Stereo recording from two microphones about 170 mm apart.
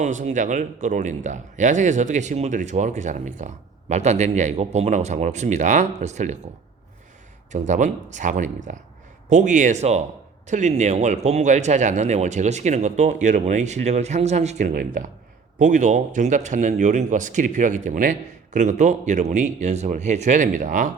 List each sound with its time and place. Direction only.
0.0 s speech: 45° right (ahead or behind)
7.7 s speech: 45° right (ahead or behind)